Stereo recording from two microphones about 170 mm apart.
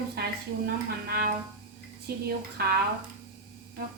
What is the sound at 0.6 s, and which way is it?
Speech, 60° right (ahead or behind).